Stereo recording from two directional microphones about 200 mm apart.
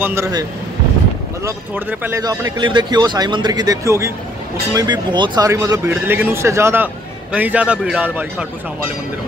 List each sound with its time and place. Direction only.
0.0 s speech: 15° right (ahead or behind)